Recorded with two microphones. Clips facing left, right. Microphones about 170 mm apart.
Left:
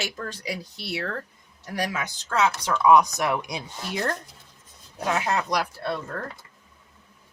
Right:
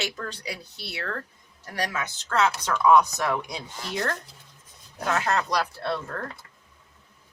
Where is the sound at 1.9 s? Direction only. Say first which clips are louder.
Even; 15° left (ahead or behind).